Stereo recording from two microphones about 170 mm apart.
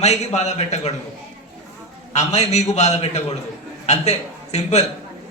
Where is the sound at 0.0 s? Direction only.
40° left (ahead or behind).